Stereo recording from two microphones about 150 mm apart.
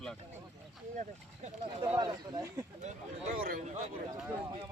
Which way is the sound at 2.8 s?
50° right (ahead or behind).